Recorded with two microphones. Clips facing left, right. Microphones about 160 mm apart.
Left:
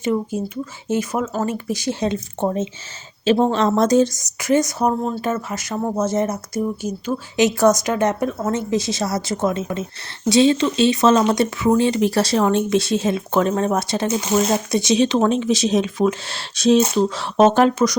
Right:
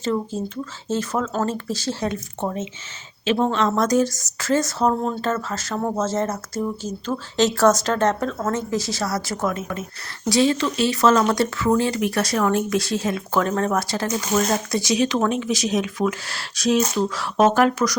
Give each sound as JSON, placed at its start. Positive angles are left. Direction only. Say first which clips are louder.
{"t": 0.0, "sound": "speech", "louder": "left 3 dB", "side_deg": 15}